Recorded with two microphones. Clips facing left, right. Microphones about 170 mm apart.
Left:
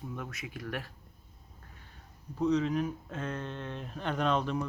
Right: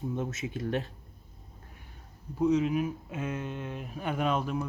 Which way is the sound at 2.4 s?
10° right (ahead or behind).